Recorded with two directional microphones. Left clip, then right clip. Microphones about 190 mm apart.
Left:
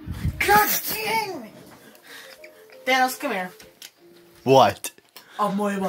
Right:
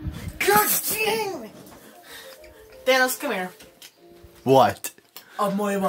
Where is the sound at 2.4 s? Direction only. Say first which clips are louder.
Right 3 dB; 10° right (ahead or behind).